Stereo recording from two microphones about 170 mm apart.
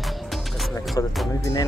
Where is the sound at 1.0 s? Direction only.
20° left (ahead or behind).